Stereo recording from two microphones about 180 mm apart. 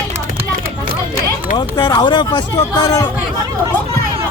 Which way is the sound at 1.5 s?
25° left (ahead or behind).